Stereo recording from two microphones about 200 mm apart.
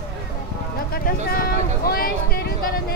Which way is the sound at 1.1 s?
45° left (ahead or behind).